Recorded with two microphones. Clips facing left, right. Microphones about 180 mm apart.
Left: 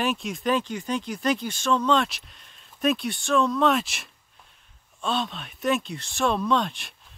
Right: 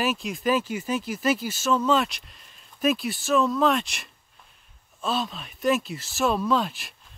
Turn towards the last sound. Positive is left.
turn(degrees=0)  # may be behind; listen again after turning